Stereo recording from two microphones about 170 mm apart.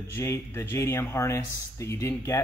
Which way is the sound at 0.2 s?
15° left (ahead or behind).